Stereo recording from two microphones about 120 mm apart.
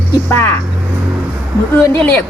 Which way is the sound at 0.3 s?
15° left (ahead or behind).